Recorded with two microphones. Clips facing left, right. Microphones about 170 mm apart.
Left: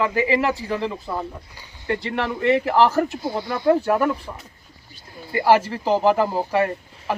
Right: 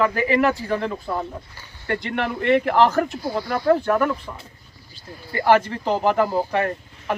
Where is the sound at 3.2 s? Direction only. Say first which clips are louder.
Right 1 dB; 20° left (ahead or behind).